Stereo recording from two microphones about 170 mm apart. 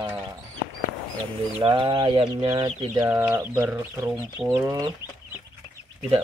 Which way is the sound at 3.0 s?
10° right (ahead or behind).